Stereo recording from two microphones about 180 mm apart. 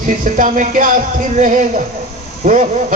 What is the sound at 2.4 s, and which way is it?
Speech, 45° right (ahead or behind).